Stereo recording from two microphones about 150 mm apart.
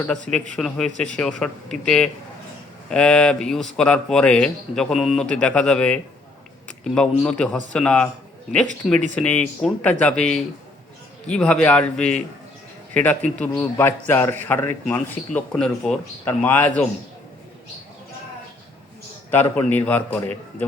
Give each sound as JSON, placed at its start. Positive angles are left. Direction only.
{"t": 0.1, "sound": "speech", "side_deg": 5}
{"t": 9.1, "sound": "speech", "side_deg": 10}
{"t": 19.3, "sound": "speech", "side_deg": 15}